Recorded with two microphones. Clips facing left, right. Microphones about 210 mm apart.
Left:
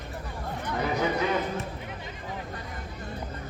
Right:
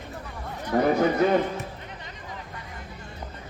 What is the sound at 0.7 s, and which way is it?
Speech, 50° right (ahead or behind).